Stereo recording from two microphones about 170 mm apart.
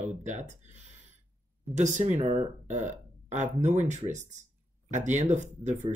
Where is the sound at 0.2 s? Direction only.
45° right (ahead or behind).